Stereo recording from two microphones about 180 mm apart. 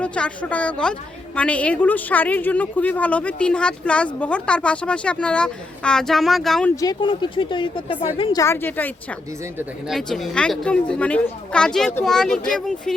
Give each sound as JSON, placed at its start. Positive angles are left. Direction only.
{"t": 0.0, "sound": "a woman's voice", "side_deg": 5}
{"t": 6.7, "sound": "a woman's voice", "side_deg": 25}